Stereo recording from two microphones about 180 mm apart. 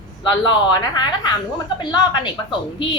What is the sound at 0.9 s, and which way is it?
Speech, 25° left (ahead or behind).